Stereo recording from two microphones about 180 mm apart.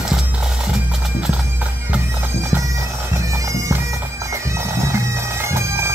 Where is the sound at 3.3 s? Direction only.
15° right (ahead or behind).